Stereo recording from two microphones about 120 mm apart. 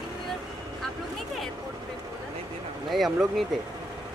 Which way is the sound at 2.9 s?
Centre (ahead or behind).